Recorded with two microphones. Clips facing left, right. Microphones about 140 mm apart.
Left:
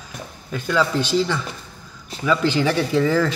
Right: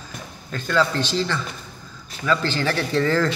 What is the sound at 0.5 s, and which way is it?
Speech, 10° left (ahead or behind).